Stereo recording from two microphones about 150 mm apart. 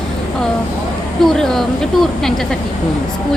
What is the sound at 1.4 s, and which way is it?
Speech, centre (ahead or behind).